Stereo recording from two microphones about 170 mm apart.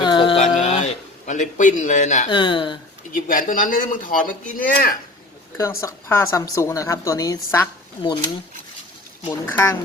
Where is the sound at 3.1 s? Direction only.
55° left (ahead or behind).